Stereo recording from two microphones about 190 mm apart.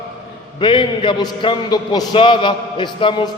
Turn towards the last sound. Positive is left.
turn(degrees=25)  # may be behind; listen again after turning